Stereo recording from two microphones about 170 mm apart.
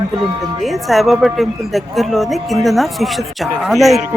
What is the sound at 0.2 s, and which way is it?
Speech, centre (ahead or behind).